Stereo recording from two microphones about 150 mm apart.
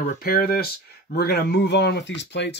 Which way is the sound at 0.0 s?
75° left (ahead or behind).